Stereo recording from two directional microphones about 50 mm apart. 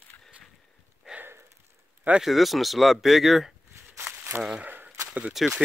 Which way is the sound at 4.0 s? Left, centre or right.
Right.